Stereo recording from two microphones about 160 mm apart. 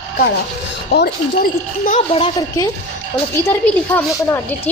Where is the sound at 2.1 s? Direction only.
35° left (ahead or behind).